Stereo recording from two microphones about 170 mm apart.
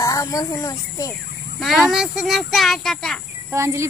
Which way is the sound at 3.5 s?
15° right (ahead or behind).